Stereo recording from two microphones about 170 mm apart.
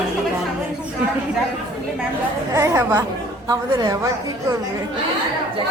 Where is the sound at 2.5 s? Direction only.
15° right (ahead or behind).